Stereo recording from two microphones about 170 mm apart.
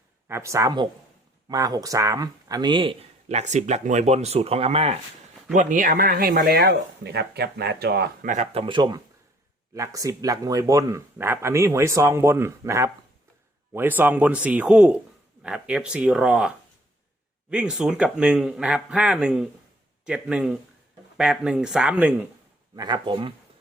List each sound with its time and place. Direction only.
0.3 s speech: 15° right (ahead or behind); by 4.9 s 35° right (ahead or behind)
5.5 s speech: 50° right (ahead or behind); by 8.3 s 70° right (ahead or behind)
8.3 s speech: 45° right (ahead or behind)
8.6 s speech: 25° right (ahead or behind); by 16.5 s 5° right (ahead or behind)
17.5 s speech: 5° right (ahead or behind)
22.7 s speech: 25° right (ahead or behind)